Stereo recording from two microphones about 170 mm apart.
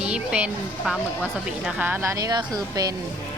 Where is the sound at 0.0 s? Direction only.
5° right (ahead or behind); by 2.9 s 20° right (ahead or behind).